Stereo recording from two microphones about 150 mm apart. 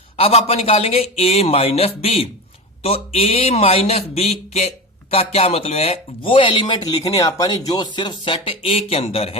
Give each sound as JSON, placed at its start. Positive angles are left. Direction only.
{"t": 0.2, "sound": "a man's voice", "side_deg": 40}